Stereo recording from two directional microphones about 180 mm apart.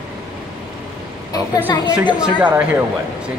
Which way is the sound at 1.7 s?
20° left (ahead or behind).